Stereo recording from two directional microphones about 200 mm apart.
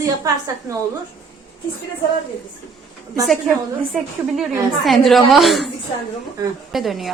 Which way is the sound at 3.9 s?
Centre (ahead or behind).